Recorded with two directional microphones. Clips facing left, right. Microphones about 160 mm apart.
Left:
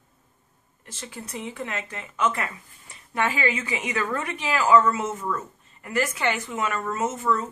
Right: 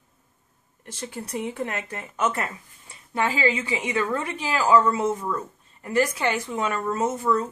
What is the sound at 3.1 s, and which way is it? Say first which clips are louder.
A woman's voice: right 2 dB; 30° right (ahead or behind).